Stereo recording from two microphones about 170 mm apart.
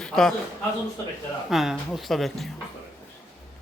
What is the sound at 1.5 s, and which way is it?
Speech, centre (ahead or behind).